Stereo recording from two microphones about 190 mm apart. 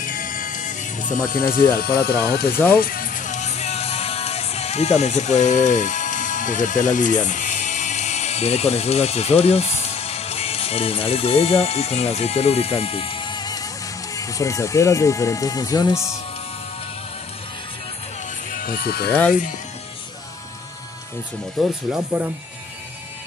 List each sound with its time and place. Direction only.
0.0 s music: 45° left (ahead or behind)
2.2 s speech: 55° left (ahead or behind)
2.8 s music: 50° left (ahead or behind); by 13.7 s 20° left (ahead or behind)
14.1 s speech: 15° left (ahead or behind)
18.5 s speech: 50° left (ahead or behind)
21.5 s speech: 5° right (ahead or behind)